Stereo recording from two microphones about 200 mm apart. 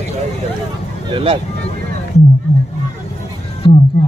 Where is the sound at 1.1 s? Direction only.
25° right (ahead or behind).